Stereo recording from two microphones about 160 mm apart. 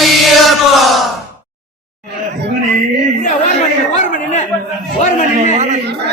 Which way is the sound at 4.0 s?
50° left (ahead or behind).